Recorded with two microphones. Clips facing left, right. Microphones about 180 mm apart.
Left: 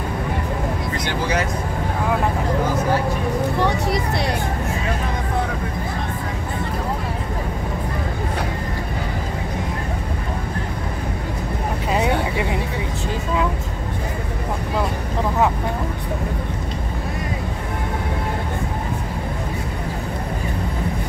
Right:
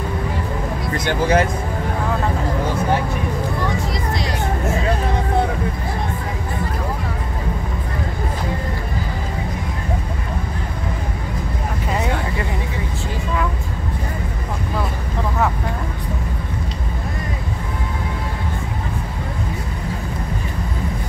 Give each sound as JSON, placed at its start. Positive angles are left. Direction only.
{"t": 0.9, "sound": "speech", "side_deg": -50}
{"t": 3.6, "sound": "speech", "side_deg": 70}
{"t": 11.9, "sound": "vehicle", "side_deg": 15}